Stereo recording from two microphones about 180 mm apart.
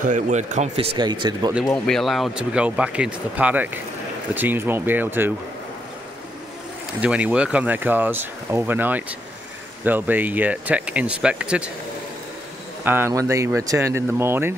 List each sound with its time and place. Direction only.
0.0 s speech: 40° right (ahead or behind)
0.9 s speech: 25° right (ahead or behind)
1.9 s speech: centre (ahead or behind)
7.0 s speech: 10° right (ahead or behind)
12.8 s speech: 10° right (ahead or behind)